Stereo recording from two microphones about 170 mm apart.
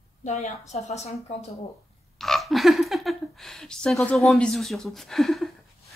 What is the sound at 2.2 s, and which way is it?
Speech, centre (ahead or behind).